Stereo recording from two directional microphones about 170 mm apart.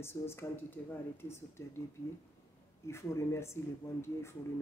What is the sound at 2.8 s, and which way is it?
Speech, 15° left (ahead or behind).